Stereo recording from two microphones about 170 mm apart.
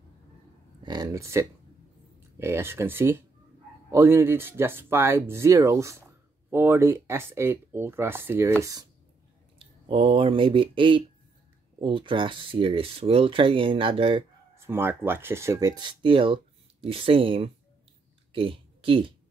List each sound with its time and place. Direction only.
0.8 s speech: 20° right (ahead or behind)
9.6 s speech: 30° right (ahead or behind)
14.5 s speech: 15° right (ahead or behind); by 19.1 s 30° right (ahead or behind)